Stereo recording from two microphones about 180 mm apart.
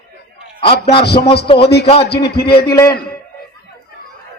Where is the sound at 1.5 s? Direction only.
30° left (ahead or behind).